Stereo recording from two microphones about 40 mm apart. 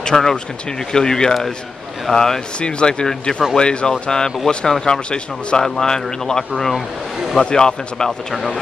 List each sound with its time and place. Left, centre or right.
0.0 s speech: centre
2.6 s speech: left
6.5 s speech: centre
7.3 s speech: centre